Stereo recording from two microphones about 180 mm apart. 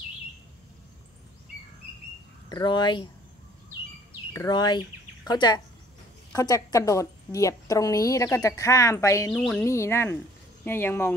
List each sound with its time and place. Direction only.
2.5 s speech: 25° left (ahead or behind)
4.3 s a woman's voice: 20° left (ahead or behind)
9.3 s a woman's voice: centre (ahead or behind)
9.6 s a woman's voice: 15° left (ahead or behind)